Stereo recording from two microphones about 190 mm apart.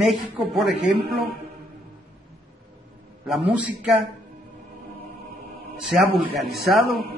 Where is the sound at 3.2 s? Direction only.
Centre (ahead or behind).